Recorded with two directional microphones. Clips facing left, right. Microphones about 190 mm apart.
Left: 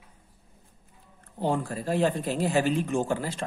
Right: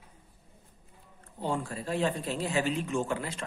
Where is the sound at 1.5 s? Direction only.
45° left (ahead or behind).